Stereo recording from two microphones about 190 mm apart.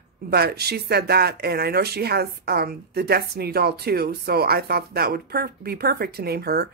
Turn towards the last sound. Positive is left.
turn(degrees=-55)  # may be behind; listen again after turning